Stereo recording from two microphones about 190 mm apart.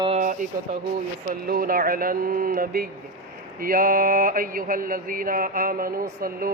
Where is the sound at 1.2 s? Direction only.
50° right (ahead or behind).